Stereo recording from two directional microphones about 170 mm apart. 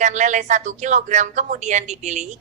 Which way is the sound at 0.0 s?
45° right (ahead or behind).